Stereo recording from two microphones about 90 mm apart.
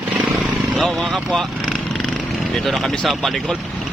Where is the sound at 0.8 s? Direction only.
5° left (ahead or behind).